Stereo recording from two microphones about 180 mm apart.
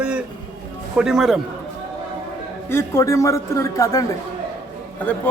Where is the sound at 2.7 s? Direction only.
15° left (ahead or behind).